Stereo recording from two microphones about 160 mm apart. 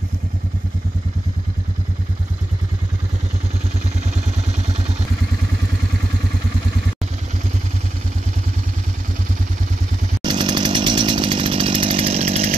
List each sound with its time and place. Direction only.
10.2 s chainsaw: 30° right (ahead or behind)